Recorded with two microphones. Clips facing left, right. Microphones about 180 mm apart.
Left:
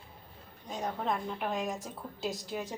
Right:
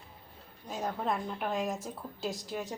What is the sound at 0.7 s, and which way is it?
A woman's voice, 5° right (ahead or behind).